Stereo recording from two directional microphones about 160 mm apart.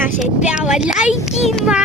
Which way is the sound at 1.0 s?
45° left (ahead or behind).